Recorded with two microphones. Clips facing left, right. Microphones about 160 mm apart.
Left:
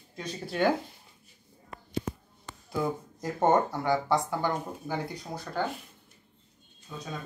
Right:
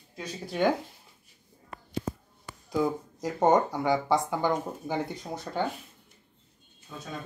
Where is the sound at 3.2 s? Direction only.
15° right (ahead or behind).